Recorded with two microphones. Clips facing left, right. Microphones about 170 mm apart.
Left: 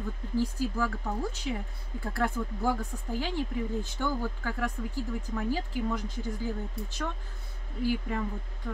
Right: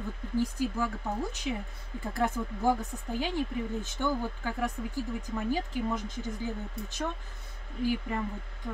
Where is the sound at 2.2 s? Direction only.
20° right (ahead or behind).